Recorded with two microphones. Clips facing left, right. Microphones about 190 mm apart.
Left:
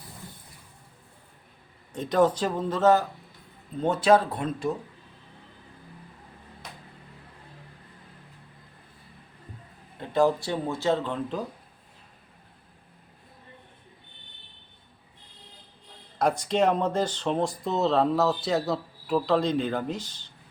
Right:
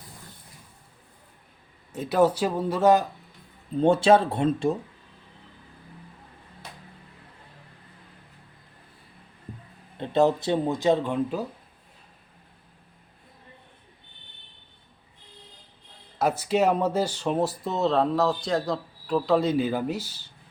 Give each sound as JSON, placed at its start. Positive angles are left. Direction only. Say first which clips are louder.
{"t": 1.9, "sound": "speech", "louder": "right 1 dB", "side_deg": -5}
{"t": 3.8, "sound": "speech", "louder": "right 3 dB", "side_deg": -30}
{"t": 10.0, "sound": "speech", "louder": "right 2 dB", "side_deg": -25}
{"t": 16.1, "sound": "speech", "louder": "right 1 dB", "side_deg": -5}